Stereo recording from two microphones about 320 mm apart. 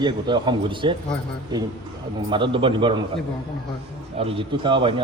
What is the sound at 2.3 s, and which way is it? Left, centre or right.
Speech, centre.